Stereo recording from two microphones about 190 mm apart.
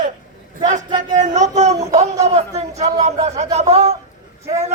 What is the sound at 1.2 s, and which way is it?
Child singing, 40° right (ahead or behind).